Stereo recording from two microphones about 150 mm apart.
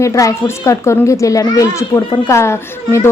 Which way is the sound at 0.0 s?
20° left (ahead or behind).